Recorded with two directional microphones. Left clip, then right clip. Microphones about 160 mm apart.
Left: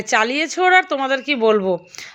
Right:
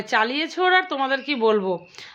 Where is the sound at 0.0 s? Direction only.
30° left (ahead or behind).